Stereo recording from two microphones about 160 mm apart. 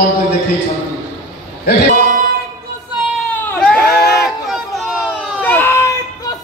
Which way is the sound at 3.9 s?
90° left.